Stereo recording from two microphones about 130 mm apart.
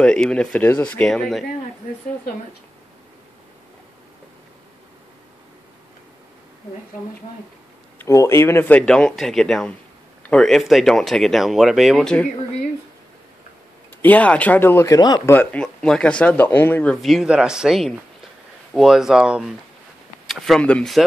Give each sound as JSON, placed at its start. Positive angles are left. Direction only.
{"t": 0.0, "sound": "speech", "side_deg": 5}
{"t": 8.0, "sound": "speech", "side_deg": 20}
{"t": 14.0, "sound": "speech", "side_deg": 10}
{"t": 15.0, "sound": "speech", "side_deg": 30}
{"t": 15.2, "sound": "speech", "side_deg": 10}
{"t": 16.9, "sound": "speech", "side_deg": 0}